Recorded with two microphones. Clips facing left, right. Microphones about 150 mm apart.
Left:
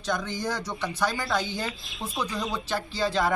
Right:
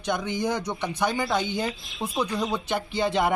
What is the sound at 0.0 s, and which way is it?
Speech, 20° right (ahead or behind).